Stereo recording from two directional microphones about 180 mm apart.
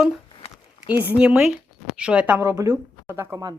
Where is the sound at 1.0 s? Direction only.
5° right (ahead or behind).